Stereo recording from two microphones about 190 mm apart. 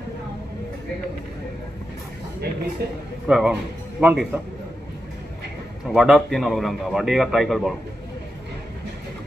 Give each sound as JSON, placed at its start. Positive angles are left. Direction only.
{"t": 2.4, "sound": "speech", "side_deg": -60}
{"t": 3.3, "sound": "a man's voice", "side_deg": -5}
{"t": 5.9, "sound": "a man's voice", "side_deg": 0}